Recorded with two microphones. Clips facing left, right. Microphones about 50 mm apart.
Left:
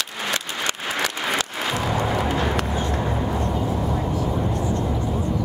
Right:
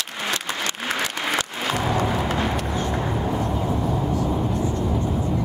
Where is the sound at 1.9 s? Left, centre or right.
Centre.